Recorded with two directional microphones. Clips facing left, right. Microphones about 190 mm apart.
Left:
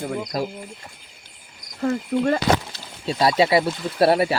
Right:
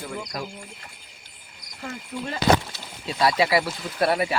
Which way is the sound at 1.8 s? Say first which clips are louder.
Left 12 dB; 55° left (ahead or behind).